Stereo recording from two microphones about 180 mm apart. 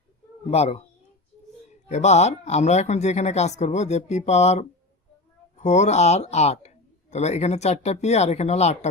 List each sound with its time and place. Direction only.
0.5 s speech: 35° left (ahead or behind)
1.9 s speech: 40° left (ahead or behind)